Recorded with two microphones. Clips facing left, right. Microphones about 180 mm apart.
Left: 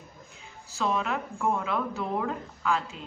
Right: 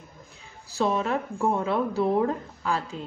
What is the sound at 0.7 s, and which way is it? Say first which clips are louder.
Speech: right 4 dB; 35° right (ahead or behind).